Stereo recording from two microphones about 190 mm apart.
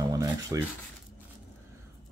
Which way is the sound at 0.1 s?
15° right (ahead or behind).